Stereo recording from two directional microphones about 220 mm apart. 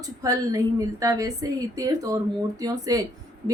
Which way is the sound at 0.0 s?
15° right (ahead or behind).